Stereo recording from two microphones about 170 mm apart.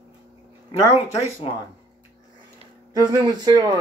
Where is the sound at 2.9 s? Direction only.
20° right (ahead or behind).